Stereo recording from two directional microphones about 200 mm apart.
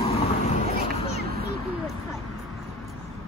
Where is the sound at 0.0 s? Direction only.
30° left (ahead or behind).